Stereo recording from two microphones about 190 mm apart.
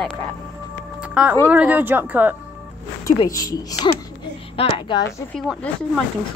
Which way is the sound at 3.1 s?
20° left (ahead or behind).